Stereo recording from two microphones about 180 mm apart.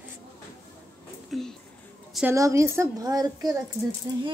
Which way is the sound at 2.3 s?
15° right (ahead or behind).